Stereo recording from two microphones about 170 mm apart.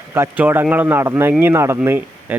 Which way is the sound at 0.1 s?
10° right (ahead or behind).